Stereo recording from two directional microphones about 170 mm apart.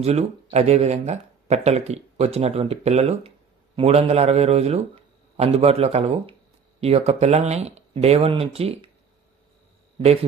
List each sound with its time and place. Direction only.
0.0 s speech: 40° right (ahead or behind)